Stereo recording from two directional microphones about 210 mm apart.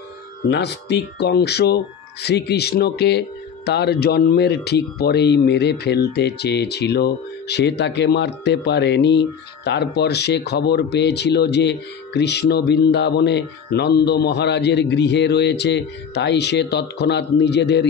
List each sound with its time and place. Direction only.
0.5 s speech: 55° left (ahead or behind)